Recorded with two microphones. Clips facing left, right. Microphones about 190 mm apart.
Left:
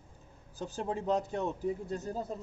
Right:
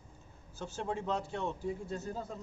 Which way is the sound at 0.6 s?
35° left (ahead or behind).